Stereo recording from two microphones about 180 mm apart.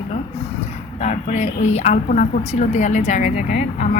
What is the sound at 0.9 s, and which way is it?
A woman's voice, 40° left (ahead or behind).